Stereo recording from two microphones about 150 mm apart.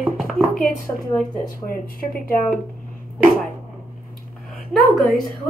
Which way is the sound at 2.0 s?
70° left (ahead or behind).